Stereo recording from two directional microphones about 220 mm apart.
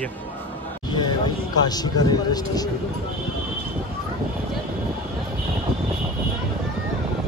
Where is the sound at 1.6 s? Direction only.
20° left (ahead or behind).